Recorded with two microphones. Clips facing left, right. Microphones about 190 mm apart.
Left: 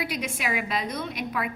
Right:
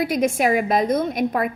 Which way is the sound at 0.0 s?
45° right (ahead or behind).